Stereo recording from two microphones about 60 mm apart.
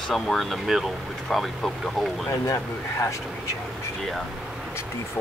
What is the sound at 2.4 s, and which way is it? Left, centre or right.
Speech, left.